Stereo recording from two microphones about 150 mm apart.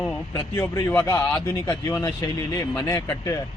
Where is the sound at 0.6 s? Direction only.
20° left (ahead or behind).